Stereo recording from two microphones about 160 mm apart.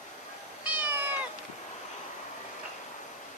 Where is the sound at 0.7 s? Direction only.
10° right (ahead or behind).